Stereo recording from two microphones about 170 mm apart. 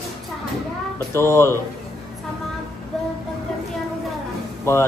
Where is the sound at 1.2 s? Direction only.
15° left (ahead or behind).